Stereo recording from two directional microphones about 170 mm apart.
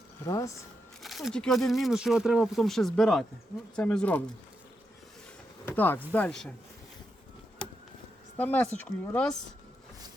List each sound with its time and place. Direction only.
0.3 s speech: 20° left (ahead or behind)
1.0 s speech: centre (ahead or behind)
5.6 s speech: 10° left (ahead or behind)
8.4 s speech: 10° left (ahead or behind)